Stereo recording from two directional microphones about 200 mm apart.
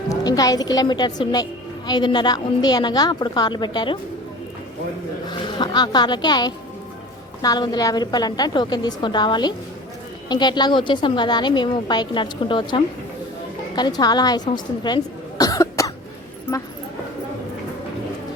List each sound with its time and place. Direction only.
0.1 s a woman's voice: 20° left (ahead or behind)
5.3 s a woman's voice: 20° left (ahead or behind)
14.5 s cough: 20° left (ahead or behind)